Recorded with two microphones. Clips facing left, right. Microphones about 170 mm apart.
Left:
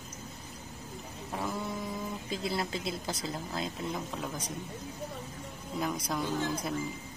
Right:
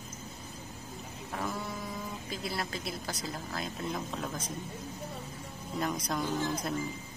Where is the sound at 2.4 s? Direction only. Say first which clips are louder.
Left 3 dB; 20° left (ahead or behind).